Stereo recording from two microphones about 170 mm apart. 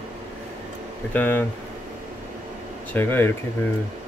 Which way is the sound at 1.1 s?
10° left (ahead or behind).